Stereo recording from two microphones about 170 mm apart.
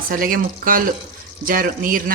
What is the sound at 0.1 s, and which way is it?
Speech, 55° right (ahead or behind).